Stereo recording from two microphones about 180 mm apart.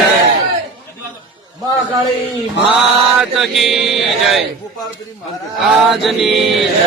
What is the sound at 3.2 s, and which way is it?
A man's voice, centre (ahead or behind).